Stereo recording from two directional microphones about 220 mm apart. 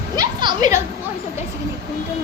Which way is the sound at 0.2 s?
20° right (ahead or behind).